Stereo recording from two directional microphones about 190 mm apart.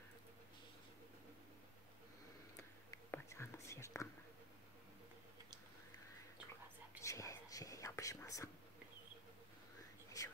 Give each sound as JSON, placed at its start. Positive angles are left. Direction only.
{"t": 2.9, "sound": "whispering", "side_deg": 15}
{"t": 7.0, "sound": "whispering", "side_deg": 15}
{"t": 10.2, "sound": "whispering", "side_deg": 20}